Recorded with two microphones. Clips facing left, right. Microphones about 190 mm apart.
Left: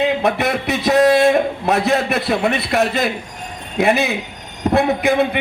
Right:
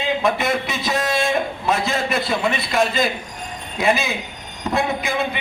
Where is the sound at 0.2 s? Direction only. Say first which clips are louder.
Left 2 dB; 65° left (ahead or behind).